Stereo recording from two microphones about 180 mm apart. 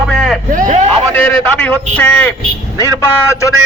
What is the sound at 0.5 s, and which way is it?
Speech, 45° right (ahead or behind).